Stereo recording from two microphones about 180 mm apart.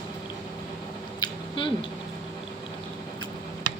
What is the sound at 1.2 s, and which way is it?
Squish, 30° left (ahead or behind).